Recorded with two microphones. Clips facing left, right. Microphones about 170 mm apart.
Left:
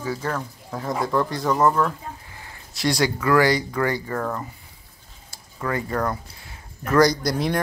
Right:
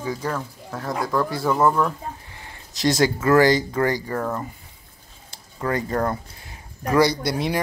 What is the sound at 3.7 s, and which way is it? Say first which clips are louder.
Speech: right 2 dB; 40° right (ahead or behind).